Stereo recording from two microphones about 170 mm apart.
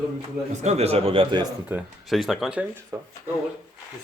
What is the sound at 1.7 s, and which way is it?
Speech, 10° right (ahead or behind).